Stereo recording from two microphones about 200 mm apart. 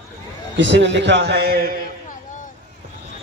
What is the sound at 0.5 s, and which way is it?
Speech, 65° right (ahead or behind).